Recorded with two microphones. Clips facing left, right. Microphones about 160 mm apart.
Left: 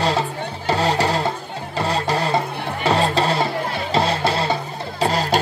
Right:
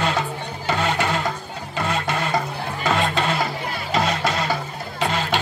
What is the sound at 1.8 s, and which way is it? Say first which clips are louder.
Music: left 3 dB; 35° left (ahead or behind).